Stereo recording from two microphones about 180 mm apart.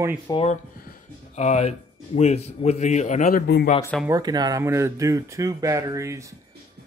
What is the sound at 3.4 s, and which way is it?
Speech, 60° left (ahead or behind).